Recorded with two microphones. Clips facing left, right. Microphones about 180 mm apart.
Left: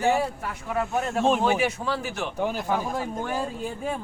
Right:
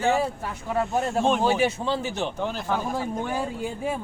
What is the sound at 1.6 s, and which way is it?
Speech, 25° right (ahead or behind).